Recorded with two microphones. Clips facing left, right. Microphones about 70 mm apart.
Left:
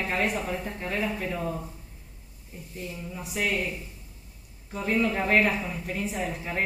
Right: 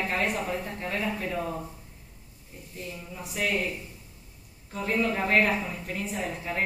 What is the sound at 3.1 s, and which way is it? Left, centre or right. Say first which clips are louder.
Speech: even; centre.